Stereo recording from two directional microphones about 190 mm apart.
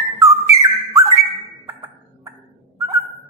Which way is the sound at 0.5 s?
15° right (ahead or behind).